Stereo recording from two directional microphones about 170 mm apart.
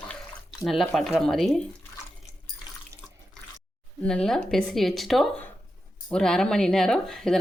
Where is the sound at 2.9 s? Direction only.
20° right (ahead or behind).